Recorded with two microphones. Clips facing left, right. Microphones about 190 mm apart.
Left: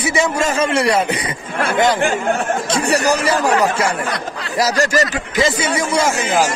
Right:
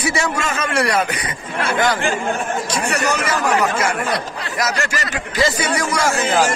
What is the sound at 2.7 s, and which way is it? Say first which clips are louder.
Speech: left 6 dB; 30° left (ahead or behind).